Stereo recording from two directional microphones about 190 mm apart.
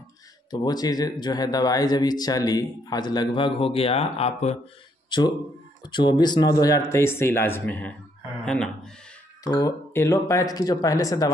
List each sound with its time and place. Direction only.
0.5 s speech: 20° left (ahead or behind)
5.9 s speech: 25° left (ahead or behind)
9.4 s speech: 20° left (ahead or behind)